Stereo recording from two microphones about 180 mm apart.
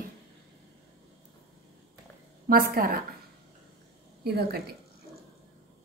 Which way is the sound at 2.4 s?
55° right (ahead or behind).